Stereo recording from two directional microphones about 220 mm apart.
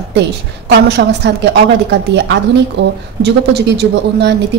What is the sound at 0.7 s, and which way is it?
Speech, 50° right (ahead or behind).